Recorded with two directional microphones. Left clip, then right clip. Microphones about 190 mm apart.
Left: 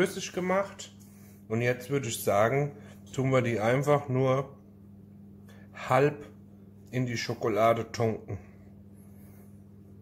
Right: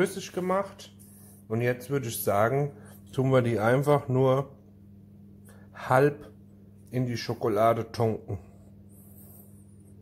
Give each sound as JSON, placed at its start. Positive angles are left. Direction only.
{"t": 0.0, "sound": "speech", "side_deg": -15}
{"t": 5.8, "sound": "speech", "side_deg": -20}